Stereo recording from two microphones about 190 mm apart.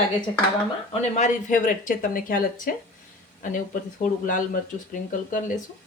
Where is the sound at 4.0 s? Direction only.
40° left (ahead or behind).